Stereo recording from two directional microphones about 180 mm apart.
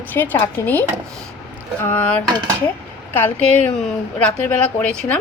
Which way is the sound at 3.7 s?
5° left (ahead or behind).